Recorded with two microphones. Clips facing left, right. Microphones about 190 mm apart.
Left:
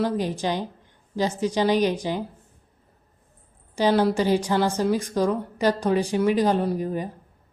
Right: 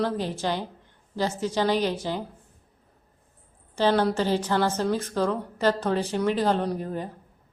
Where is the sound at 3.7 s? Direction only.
10° left (ahead or behind).